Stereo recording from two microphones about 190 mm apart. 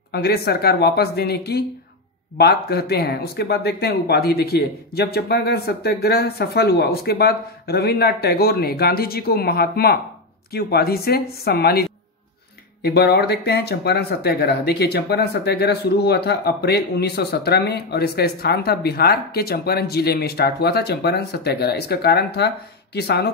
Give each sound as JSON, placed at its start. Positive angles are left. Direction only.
{"t": 0.1, "sound": "speech", "side_deg": 55}